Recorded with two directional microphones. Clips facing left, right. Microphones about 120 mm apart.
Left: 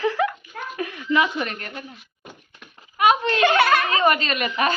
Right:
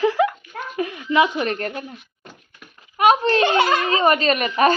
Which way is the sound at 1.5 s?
40° right (ahead or behind).